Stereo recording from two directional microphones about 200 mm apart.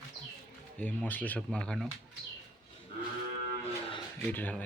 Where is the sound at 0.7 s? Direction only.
5° left (ahead or behind).